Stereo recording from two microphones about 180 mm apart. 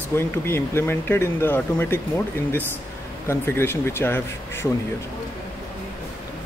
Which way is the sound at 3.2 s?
15° left (ahead or behind).